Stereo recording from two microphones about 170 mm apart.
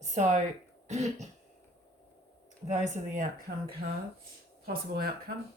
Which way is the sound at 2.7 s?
45° right (ahead or behind).